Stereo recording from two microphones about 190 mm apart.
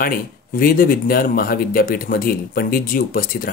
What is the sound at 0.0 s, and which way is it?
Speech, 50° left (ahead or behind).